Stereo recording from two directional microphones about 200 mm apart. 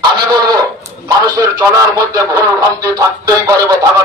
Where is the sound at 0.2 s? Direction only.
20° right (ahead or behind).